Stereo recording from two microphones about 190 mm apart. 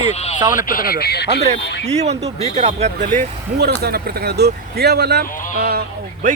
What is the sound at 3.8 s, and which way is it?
Speech, 55° right (ahead or behind).